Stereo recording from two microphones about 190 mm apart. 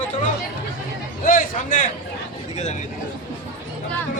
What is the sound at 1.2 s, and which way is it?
Speech, 45° left (ahead or behind).